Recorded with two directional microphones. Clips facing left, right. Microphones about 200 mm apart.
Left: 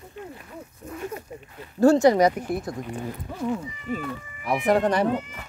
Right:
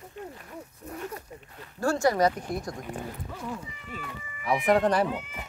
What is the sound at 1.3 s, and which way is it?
Speech, 10° left (ahead or behind).